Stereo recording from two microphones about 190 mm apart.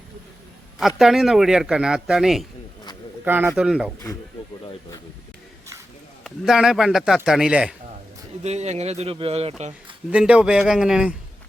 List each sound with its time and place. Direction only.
0.8 s a man's voice: centre (ahead or behind)
6.2 s a man's voice: 5° right (ahead or behind)
8.4 s speech: 35° right (ahead or behind)
10.1 s a man's voice: 5° right (ahead or behind)